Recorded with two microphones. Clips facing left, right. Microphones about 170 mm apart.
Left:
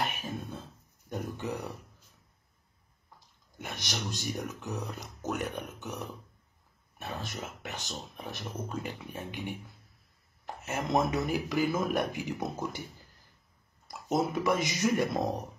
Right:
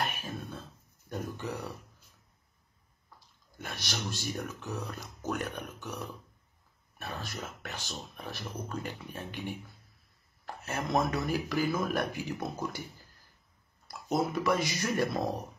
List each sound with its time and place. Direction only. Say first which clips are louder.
0.5 s a sound: left 1 dB; 15° left (ahead or behind)
1.4 s speech: left 2 dB; 20° left (ahead or behind)
3.5 s speech: left 1 dB; 20° left (ahead or behind)
14.0 s speech: left 1 dB; 20° left (ahead or behind)